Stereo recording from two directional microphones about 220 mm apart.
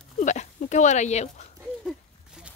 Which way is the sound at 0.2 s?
35° left (ahead or behind).